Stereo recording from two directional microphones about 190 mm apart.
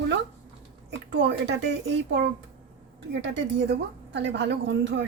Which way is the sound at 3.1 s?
65° right (ahead or behind).